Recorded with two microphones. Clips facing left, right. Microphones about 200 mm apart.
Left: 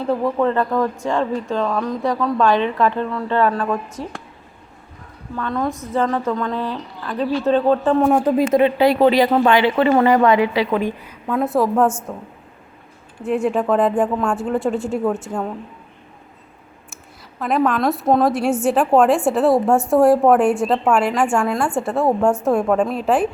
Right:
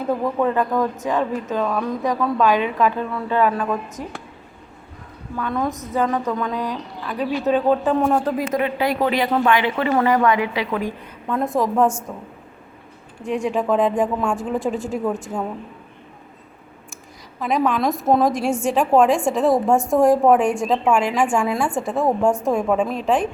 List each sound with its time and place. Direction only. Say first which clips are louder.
0.3 s speech: left 1 dB; 10° right (ahead or behind)
5.4 s speech: left 1 dB; 10° right (ahead or behind)
7.9 s a man's voice: left 3 dB; 5° left (ahead or behind)
8.2 s speech: left 6 dB; 25° left (ahead or behind)
11.0 s a woman's voice: left 2 dB; 5° left (ahead or behind)
17.4 s a woman's voice: left 2 dB; centre (ahead or behind)
19.7 s speech: left 2 dB; 15° right (ahead or behind)
20.0 s a woman's voice: left 2 dB; centre (ahead or behind)
22.3 s speech: left 2 dB; 15° right (ahead or behind)
22.5 s a woman's voice: left 2 dB; centre (ahead or behind)